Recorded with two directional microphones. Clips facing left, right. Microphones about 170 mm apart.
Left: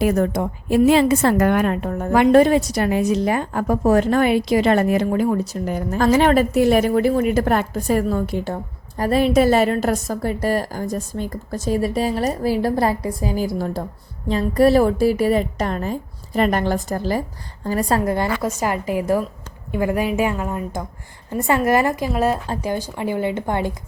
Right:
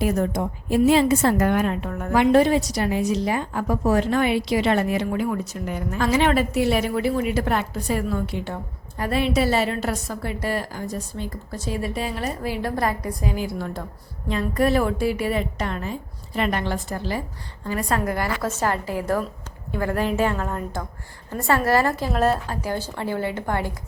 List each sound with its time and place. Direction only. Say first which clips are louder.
0.0 s a woman's voice: left 4 dB; 70° left (ahead or behind)
1.9 s a woman's voice: left 5 dB; 30° left (ahead or behind)
2.1 s a woman's voice: left 4 dB; 50° left (ahead or behind)
5.0 s a woman's voice: left 5 dB; 35° left (ahead or behind)
18.4 s speech: left 2 dB; 15° left (ahead or behind)